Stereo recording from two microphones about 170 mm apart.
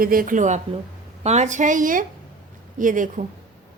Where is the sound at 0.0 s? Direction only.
55° right (ahead or behind).